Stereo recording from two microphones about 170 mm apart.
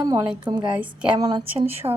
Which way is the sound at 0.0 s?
20° right (ahead or behind).